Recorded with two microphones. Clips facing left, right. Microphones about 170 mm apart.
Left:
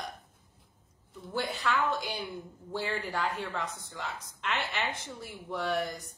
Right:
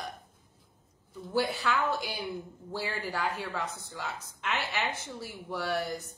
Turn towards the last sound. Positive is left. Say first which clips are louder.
# left 1 dB
turn(degrees=-5)  # may be behind; listen again after turning